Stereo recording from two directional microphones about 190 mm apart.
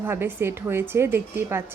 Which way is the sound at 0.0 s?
10° right (ahead or behind).